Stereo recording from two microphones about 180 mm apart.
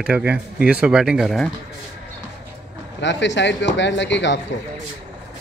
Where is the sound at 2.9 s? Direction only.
80° left.